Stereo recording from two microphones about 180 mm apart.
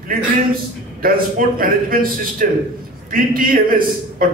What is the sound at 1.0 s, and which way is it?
A man's voice, 50° right (ahead or behind).